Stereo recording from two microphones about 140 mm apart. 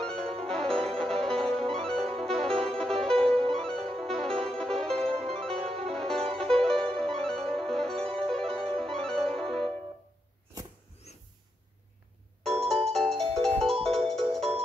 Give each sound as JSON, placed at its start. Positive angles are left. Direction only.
{"t": 0.0, "sound": "music", "side_deg": 5}
{"t": 11.1, "sound": "snort", "side_deg": 55}
{"t": 12.4, "sound": "music", "side_deg": 0}
{"t": 14.0, "sound": "ringtone", "side_deg": 0}